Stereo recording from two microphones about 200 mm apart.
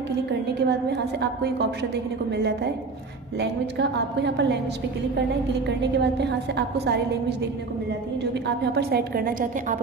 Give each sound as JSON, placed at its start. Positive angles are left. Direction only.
{"t": 0.3, "sound": "a woman's voice", "side_deg": -55}
{"t": 5.9, "sound": "a woman's voice", "side_deg": -60}